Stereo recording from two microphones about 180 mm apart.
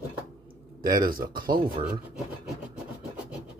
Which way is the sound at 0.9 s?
50° right (ahead or behind).